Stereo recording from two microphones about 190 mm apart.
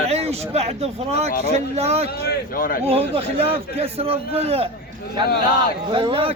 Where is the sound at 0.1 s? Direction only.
35° right (ahead or behind).